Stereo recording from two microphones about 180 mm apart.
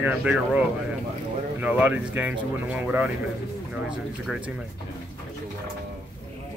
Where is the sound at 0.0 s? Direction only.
10° right (ahead or behind).